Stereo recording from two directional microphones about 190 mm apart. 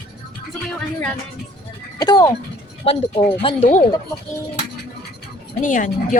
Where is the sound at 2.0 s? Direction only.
20° left (ahead or behind); by 3.8 s 35° left (ahead or behind).